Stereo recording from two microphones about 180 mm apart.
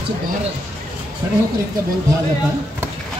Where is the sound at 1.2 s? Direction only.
20° right (ahead or behind).